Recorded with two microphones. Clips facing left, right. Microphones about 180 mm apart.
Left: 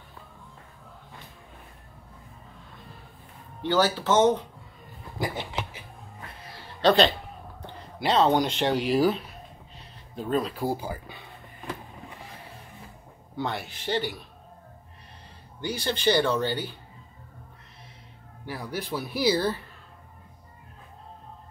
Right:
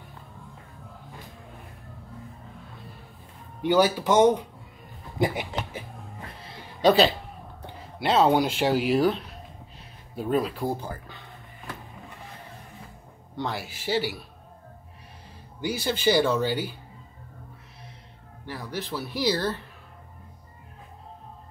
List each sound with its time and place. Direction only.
3.6 s speech: 10° right (ahead or behind)
5.5 s speech: 50° right (ahead or behind)
6.6 s music: 10° right (ahead or behind)
8.0 s speech: 5° right (ahead or behind)
10.1 s speech: 10° right (ahead or behind)
10.5 s speech: 5° left (ahead or behind)
13.4 s speech: centre (ahead or behind)
15.6 s speech: 10° right (ahead or behind)
18.4 s speech: 10° left (ahead or behind)